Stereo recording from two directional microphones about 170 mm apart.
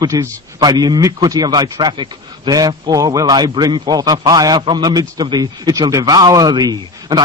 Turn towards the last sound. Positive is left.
turn(degrees=-25)  # may be behind; listen again after turning